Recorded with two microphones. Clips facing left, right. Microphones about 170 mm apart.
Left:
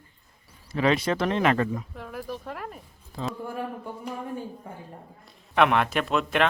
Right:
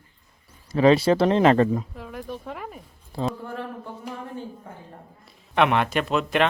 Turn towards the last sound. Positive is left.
turn(degrees=0)  # may be behind; listen again after turning